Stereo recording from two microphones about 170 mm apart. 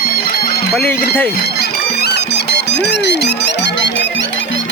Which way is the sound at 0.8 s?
10° left (ahead or behind).